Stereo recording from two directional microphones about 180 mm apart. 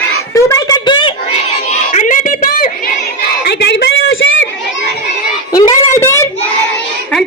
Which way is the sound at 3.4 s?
70° left (ahead or behind).